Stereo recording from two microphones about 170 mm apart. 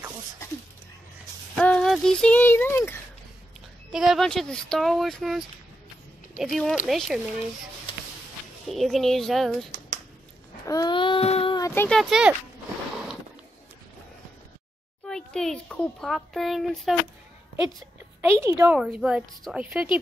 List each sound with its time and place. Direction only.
1.5 s speech: 5° left (ahead or behind)
3.9 s a child's voice: centre (ahead or behind)
8.6 s a child's voice: centre (ahead or behind)
10.7 s baby cry: 25° left (ahead or behind)
11.5 s speech: 15° left (ahead or behind)
12.0 s a child's voice: 5° right (ahead or behind)
15.0 s a child's voice: 5° left (ahead or behind)
18.4 s a woman's voice: 15° right (ahead or behind)
18.8 s a child's voice: 5° right (ahead or behind)